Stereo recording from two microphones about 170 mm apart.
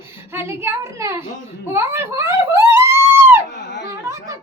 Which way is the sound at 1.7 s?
15° right (ahead or behind).